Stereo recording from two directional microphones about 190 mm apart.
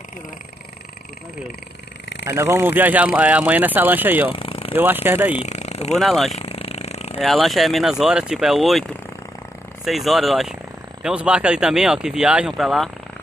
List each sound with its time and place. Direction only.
2.2 s speech: 15° right (ahead or behind)
4.3 s a sound: 30° left (ahead or behind)
4.7 s speech: 10° right (ahead or behind)
5.3 s speech: 35° left (ahead or behind)
5.9 s speech: centre (ahead or behind)
6.3 s a sound: 30° left (ahead or behind)
7.2 s speech: centre (ahead or behind)